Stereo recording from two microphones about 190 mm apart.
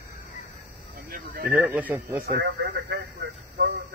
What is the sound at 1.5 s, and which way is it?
Speech, 10° right (ahead or behind).